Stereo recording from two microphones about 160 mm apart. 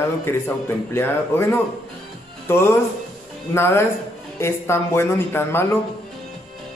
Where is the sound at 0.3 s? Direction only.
15° left (ahead or behind).